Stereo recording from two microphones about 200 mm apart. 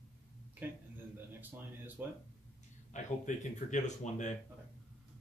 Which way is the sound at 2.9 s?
40° left (ahead or behind).